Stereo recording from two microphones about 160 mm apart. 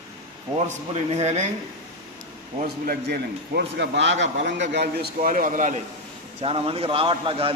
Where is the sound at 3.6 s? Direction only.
90° right; by 5.7 s 55° right (ahead or behind).